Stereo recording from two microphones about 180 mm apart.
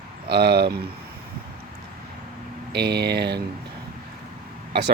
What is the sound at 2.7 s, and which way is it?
Speech, 65° right (ahead or behind).